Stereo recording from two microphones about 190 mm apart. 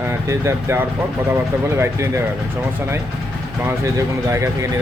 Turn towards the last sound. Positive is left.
turn(degrees=-15)  # may be behind; listen again after turning